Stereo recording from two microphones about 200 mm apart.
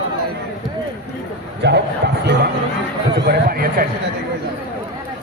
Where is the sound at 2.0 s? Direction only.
60° right (ahead or behind).